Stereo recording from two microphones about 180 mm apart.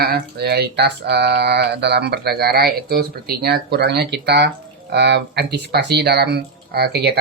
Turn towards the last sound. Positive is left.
turn(degrees=-65)  # may be behind; listen again after turning